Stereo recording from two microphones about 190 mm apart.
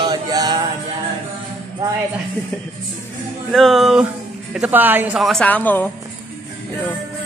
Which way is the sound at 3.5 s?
Centre (ahead or behind).